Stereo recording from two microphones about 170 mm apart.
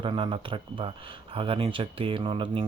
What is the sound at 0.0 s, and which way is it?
Speech, 30° right (ahead or behind).